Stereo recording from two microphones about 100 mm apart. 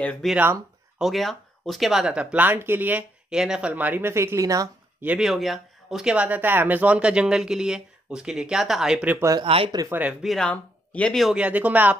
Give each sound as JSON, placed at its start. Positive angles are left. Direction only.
{"t": 0.2, "sound": "speech", "side_deg": 0}
{"t": 5.2, "sound": "speech", "side_deg": 0}
{"t": 9.4, "sound": "speech", "side_deg": -70}
{"t": 9.8, "sound": "speech", "side_deg": -20}
{"t": 10.2, "sound": "speech", "side_deg": 0}
{"t": 10.5, "sound": "speech", "side_deg": 10}
{"t": 11.3, "sound": "speech", "side_deg": -15}